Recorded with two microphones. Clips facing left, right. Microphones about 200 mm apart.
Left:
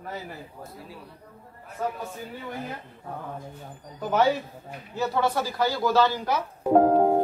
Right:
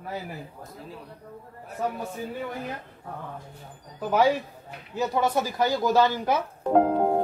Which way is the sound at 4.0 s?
10° right (ahead or behind).